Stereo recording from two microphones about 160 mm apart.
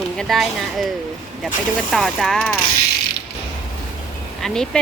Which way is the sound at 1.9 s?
Centre (ahead or behind).